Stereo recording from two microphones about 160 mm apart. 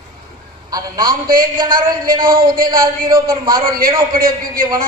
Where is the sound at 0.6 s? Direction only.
25° right (ahead or behind).